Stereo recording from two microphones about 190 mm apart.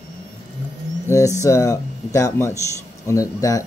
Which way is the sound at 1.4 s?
15° left (ahead or behind).